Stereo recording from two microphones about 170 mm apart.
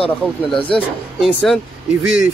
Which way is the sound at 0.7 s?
5° left (ahead or behind).